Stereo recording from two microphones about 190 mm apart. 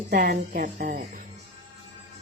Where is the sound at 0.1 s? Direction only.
50° right (ahead or behind).